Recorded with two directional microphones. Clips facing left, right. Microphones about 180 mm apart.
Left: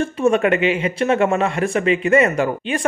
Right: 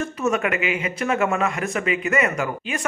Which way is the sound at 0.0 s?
30° left (ahead or behind).